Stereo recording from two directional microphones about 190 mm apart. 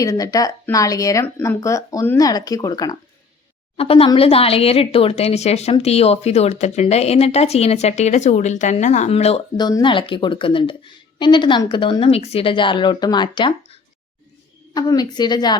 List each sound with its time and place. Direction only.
0.0 s speech: 20° left (ahead or behind)
3.8 s a woman's voice: 30° left (ahead or behind)